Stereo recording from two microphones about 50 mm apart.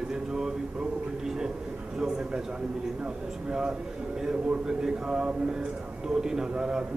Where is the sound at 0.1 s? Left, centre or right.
Centre.